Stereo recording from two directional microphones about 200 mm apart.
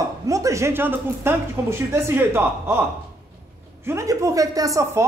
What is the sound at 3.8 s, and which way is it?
Speech, 15° right (ahead or behind).